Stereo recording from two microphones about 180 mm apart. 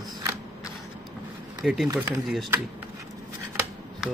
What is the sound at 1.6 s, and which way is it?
Speech, centre (ahead or behind).